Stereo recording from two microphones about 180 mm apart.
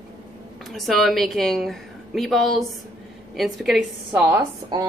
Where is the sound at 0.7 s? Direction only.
Centre (ahead or behind).